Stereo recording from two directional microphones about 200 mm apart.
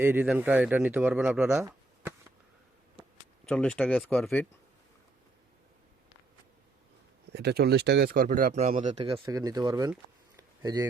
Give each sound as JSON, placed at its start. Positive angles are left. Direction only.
{"t": 0.0, "sound": "speech", "side_deg": -10}
{"t": 3.4, "sound": "speech", "side_deg": 5}
{"t": 7.3, "sound": "speech", "side_deg": -55}
{"t": 9.0, "sound": "speech", "side_deg": -20}
{"t": 10.3, "sound": "a sound", "side_deg": -20}